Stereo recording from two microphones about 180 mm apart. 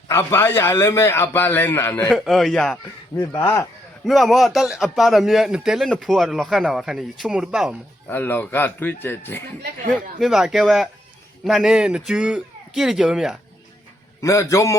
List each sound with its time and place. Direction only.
0.1 s a man's voice: 15° left (ahead or behind)
2.1 s speech: centre (ahead or behind)
3.2 s a man's voice: 15° left (ahead or behind)
4.0 s speech: centre (ahead or behind)
8.0 s a man's voice: 10° left (ahead or behind)
9.9 s speech: centre (ahead or behind)
14.2 s a man's voice: 15° left (ahead or behind)